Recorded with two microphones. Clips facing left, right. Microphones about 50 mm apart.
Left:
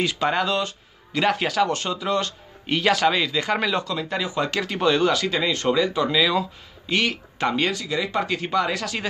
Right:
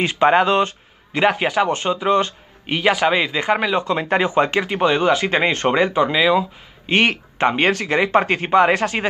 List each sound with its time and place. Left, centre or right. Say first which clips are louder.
0.0 s speech: right 7 dB; right
3.8 s speech: right 8 dB; right
4.5 s speech: right 4 dB; right
5.3 s speech: right 4 dB; right
5.9 s speech: right 5 dB; right
6.9 s speech: right 6 dB; right
7.7 s speech: right 8 dB; right